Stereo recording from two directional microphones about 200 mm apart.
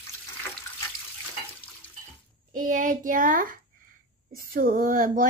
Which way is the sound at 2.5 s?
40° right (ahead or behind).